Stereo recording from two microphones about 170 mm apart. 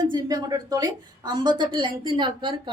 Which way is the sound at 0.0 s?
25° right (ahead or behind).